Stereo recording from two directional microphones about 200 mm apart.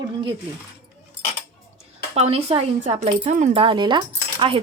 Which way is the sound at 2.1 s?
30° right (ahead or behind).